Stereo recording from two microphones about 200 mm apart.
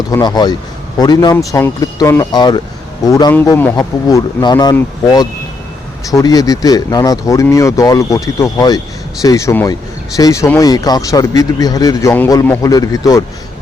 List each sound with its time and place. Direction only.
0.1 s speech: 20° left (ahead or behind)